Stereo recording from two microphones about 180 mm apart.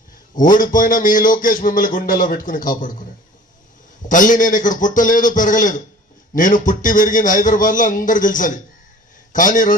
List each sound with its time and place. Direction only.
0.3 s speech: 50° left (ahead or behind)
4.1 s speech: 45° left (ahead or behind)